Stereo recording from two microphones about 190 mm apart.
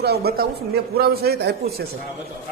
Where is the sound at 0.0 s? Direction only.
55° right (ahead or behind).